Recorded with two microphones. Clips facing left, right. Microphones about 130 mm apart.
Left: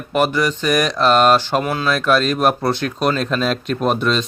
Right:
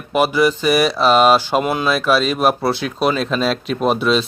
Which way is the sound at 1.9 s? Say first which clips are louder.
Even; 5° right (ahead or behind).